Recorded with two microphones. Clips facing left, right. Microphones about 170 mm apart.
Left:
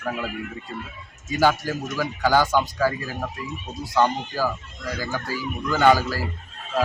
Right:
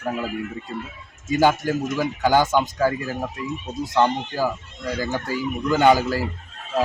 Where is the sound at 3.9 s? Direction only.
20° right (ahead or behind).